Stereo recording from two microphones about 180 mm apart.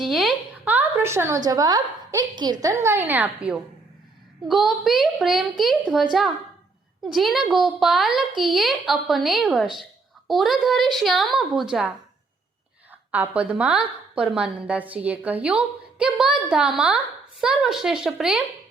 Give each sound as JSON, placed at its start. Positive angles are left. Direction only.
{"t": 0.0, "sound": "a sound", "side_deg": 0}
{"t": 1.5, "sound": "a woman's voice", "side_deg": -20}
{"t": 12.9, "sound": "a woman's voice", "side_deg": -10}